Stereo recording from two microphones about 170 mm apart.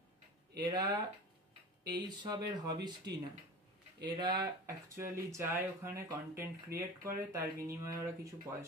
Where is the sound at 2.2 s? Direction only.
20° right (ahead or behind).